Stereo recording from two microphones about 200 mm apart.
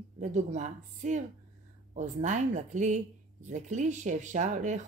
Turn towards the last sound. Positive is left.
turn(degrees=-40)  # may be behind; listen again after turning